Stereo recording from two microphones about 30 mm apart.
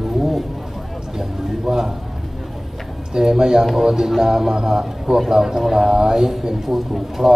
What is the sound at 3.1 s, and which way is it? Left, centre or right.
A man's voice, centre.